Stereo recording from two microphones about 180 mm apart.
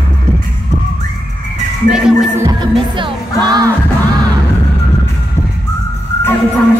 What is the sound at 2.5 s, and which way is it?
Music, 25° right (ahead or behind).